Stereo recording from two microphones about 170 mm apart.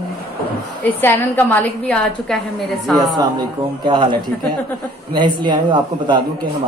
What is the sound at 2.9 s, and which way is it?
A man's voice, 25° right (ahead or behind).